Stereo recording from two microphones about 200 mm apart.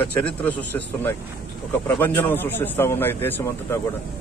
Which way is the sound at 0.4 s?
5° left (ahead or behind).